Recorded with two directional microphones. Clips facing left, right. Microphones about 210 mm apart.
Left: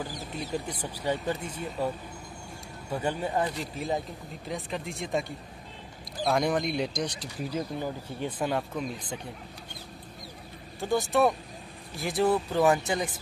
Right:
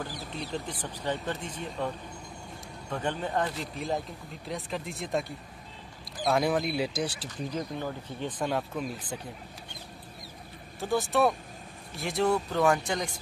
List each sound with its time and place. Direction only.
0.1 s mouse: 45° left (ahead or behind)
0.5 s speech: 10° left (ahead or behind)
6.2 s speech: centre (ahead or behind)
7.2 s speech: 10° left (ahead or behind); by 9.2 s 5° right (ahead or behind)
10.8 s speech: centre (ahead or behind)